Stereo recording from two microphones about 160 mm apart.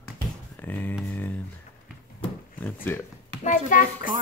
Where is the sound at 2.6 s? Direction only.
15° left (ahead or behind).